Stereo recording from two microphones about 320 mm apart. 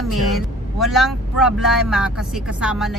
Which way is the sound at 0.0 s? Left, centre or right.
Centre.